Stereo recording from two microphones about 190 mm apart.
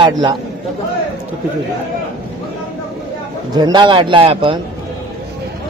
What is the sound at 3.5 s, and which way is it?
Speech, 20° right (ahead or behind).